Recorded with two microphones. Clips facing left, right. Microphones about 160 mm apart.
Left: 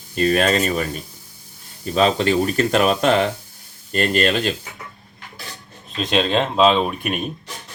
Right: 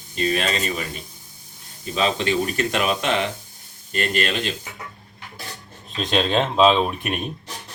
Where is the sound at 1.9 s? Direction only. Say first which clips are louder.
Left 4 dB; 40° left (ahead or behind).